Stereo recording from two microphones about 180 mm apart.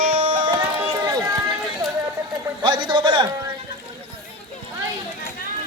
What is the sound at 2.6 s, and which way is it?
Speech, 25° right (ahead or behind).